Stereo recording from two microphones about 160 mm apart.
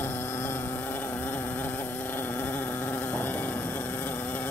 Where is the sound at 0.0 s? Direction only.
15° left (ahead or behind).